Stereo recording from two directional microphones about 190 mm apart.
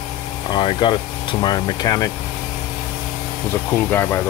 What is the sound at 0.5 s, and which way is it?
Speech, 25° left (ahead or behind).